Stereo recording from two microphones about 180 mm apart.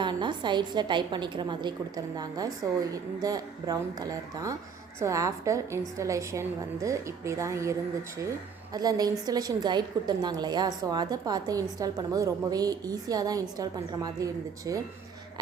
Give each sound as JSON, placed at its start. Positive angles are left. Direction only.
{"t": 0.0, "sound": "a woman's voice", "side_deg": -25}